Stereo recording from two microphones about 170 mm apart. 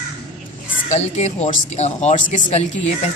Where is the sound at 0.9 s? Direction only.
40° left (ahead or behind).